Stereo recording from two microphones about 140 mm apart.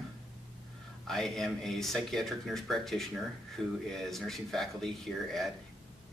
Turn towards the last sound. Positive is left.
turn(degrees=0)  # may be behind; listen again after turning